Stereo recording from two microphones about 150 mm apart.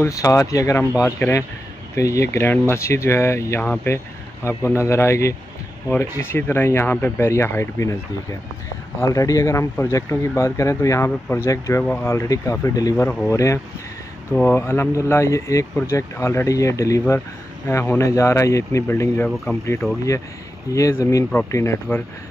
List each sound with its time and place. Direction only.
0.0 s speech: 20° left (ahead or behind)
3.6 s speech: 5° left (ahead or behind)
4.5 s speech: 15° left (ahead or behind)
9.0 s speech: 20° left (ahead or behind)
19.8 s speech: centre (ahead or behind)
20.7 s speech: 20° left (ahead or behind)